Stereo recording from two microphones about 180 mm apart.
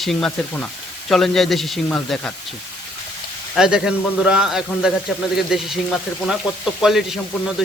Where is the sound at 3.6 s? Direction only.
5° right (ahead or behind).